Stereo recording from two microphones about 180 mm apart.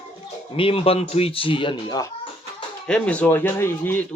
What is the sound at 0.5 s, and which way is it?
Speech, 30° left (ahead or behind).